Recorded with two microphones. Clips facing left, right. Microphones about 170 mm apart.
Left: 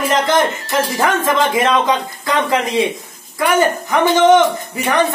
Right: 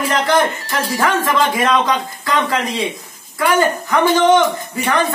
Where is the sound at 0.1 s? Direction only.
20° left (ahead or behind).